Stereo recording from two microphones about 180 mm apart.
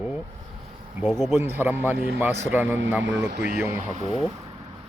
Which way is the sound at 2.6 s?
90° right.